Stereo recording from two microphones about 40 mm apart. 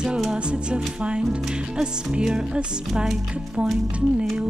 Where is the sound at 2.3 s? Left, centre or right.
Right.